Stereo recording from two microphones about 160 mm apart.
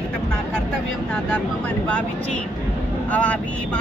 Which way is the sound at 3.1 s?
10° left (ahead or behind).